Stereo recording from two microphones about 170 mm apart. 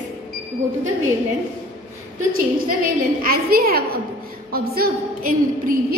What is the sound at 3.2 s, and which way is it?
A woman's voice, 60° right (ahead or behind).